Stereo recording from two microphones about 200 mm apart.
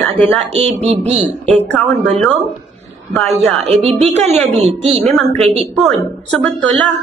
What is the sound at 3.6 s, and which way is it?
Speech, 30° right (ahead or behind).